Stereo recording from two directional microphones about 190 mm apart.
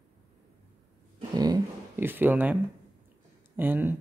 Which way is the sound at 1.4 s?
15° right (ahead or behind).